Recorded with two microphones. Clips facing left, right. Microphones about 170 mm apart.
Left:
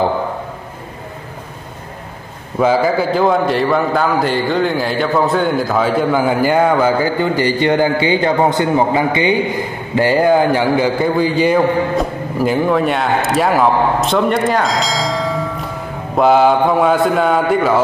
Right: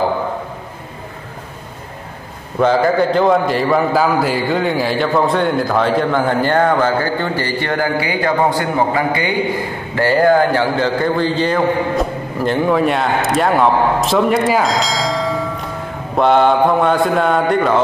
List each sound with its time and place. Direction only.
2.6 s a man's voice: 5° left (ahead or behind)